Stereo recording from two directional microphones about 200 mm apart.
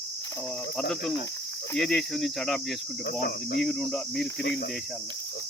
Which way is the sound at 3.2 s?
55° left (ahead or behind).